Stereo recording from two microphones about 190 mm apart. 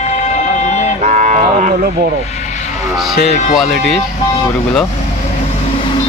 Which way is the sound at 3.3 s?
40° left (ahead or behind).